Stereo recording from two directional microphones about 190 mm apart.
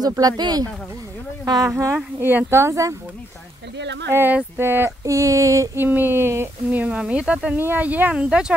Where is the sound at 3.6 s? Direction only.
65° right (ahead or behind).